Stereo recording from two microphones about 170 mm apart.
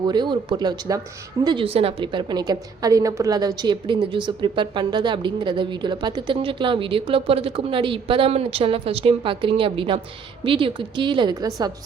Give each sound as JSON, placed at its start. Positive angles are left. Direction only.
{"t": 0.0, "sound": "a woman's voice", "side_deg": -25}